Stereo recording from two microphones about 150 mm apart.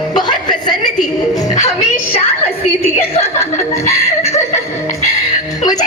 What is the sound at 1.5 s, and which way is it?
Speech, 50° left (ahead or behind).